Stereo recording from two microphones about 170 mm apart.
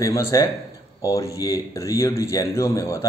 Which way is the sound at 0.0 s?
20° left (ahead or behind).